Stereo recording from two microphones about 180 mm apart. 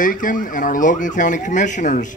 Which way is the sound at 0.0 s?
50° left (ahead or behind).